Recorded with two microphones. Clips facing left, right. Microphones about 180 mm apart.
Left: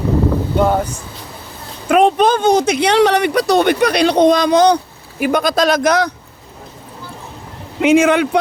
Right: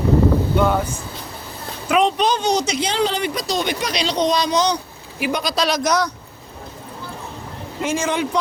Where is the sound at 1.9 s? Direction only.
50° left (ahead or behind).